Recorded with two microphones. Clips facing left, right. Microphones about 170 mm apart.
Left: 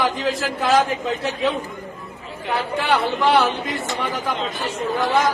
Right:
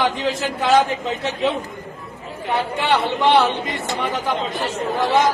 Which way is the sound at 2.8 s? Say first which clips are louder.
Right 1 dB; centre (ahead or behind).